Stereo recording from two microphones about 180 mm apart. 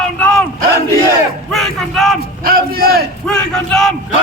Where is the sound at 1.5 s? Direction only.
Centre (ahead or behind).